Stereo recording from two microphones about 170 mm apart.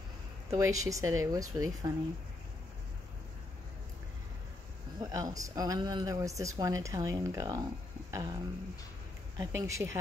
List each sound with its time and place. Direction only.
0.5 s speech: 20° right (ahead or behind)
5.0 s speech: 20° right (ahead or behind)
8.1 s a sound: 20° right (ahead or behind)
9.4 s speech: 15° right (ahead or behind)